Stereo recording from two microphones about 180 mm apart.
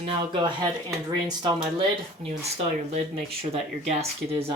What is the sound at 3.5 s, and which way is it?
Speech, 35° right (ahead or behind).